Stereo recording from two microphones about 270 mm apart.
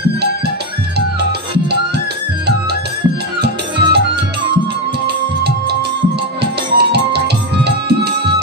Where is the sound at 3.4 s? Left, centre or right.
Right.